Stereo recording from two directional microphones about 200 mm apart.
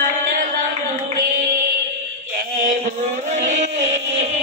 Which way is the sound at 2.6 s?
40° right (ahead or behind).